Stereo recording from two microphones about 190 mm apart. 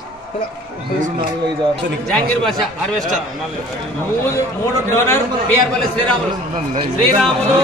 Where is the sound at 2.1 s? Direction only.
Centre (ahead or behind).